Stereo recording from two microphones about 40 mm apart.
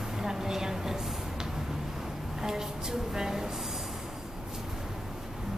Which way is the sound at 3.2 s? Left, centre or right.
Centre.